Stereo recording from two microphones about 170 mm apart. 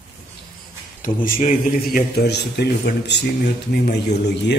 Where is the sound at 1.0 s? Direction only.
50° left (ahead or behind); by 3.2 s 80° left.